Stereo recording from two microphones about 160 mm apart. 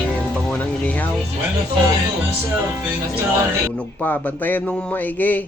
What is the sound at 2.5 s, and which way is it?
Speech, 15° right (ahead or behind).